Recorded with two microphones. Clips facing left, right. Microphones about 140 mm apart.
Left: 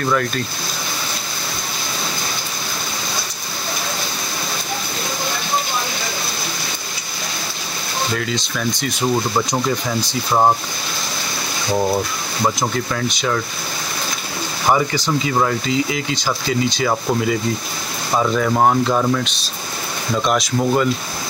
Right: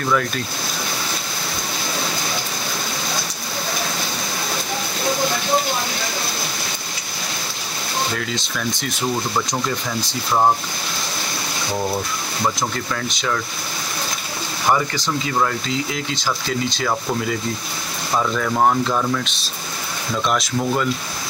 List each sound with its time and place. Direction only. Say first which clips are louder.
12.9 s speech: left 3 dB; 5° left (ahead or behind)
14.7 s speech: left 2 dB; 10° left (ahead or behind)
18.1 s speech: left 3 dB; 15° left (ahead or behind)
20.2 s speech: left 3 dB; 5° left (ahead or behind)